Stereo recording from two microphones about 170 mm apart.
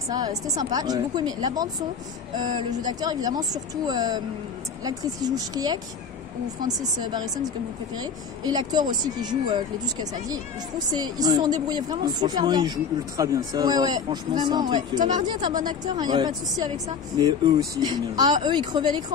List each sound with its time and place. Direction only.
0.6 s speech: 25° right (ahead or behind)
15.0 s speech: 45° right (ahead or behind)
16.0 s speech: 25° right (ahead or behind)